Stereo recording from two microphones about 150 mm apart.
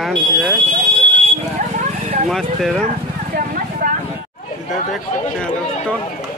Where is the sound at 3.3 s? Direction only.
65° right (ahead or behind).